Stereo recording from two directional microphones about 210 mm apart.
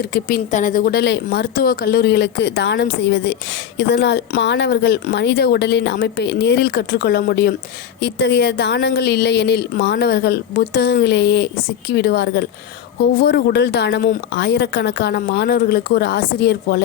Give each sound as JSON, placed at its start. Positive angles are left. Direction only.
{"t": 0.0, "sound": "a woman's voice", "side_deg": 45}